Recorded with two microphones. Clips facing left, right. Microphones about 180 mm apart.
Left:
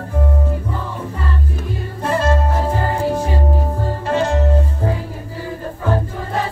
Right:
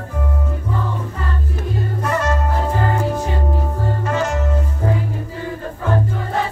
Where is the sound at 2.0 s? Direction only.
30° left (ahead or behind).